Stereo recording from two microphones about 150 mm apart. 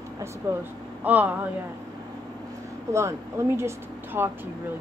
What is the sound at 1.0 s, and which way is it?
Speech, 10° right (ahead or behind).